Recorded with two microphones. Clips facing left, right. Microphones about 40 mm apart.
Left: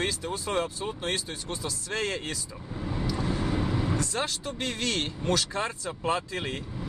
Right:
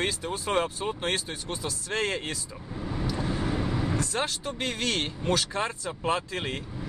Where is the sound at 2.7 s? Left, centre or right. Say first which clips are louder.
Even; centre.